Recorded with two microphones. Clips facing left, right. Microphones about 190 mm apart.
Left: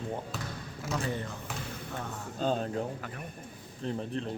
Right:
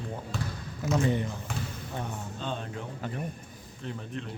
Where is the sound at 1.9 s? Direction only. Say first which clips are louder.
Right 3 dB; 20° right (ahead or behind).